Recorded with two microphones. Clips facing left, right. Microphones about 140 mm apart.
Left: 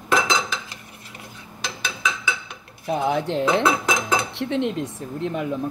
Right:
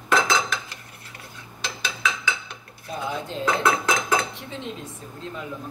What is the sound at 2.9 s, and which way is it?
Dishes, 70° left (ahead or behind).